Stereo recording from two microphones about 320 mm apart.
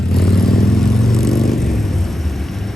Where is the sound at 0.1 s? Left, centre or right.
Centre.